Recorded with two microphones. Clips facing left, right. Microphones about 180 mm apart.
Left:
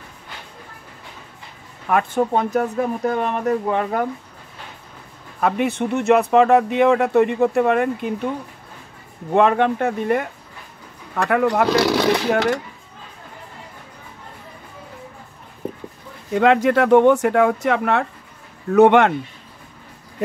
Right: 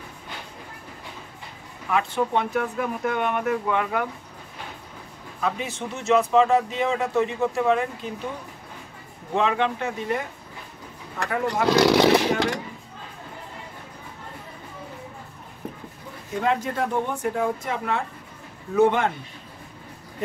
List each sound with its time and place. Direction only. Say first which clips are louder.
1.9 s speech: left 5 dB; 50° left (ahead or behind)
5.4 s speech: left 8 dB; 60° left (ahead or behind)
9.3 s speech: left 7 dB; 55° left (ahead or behind)
11.1 s speech: left 7 dB; 65° left (ahead or behind)
16.3 s speech: left 9 dB; 80° left